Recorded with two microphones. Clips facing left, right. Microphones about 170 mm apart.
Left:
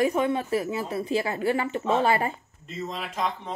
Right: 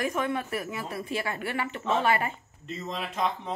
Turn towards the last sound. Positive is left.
turn(degrees=0)  # may be behind; listen again after turning